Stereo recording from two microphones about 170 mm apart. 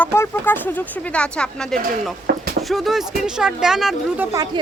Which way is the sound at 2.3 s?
65° right (ahead or behind).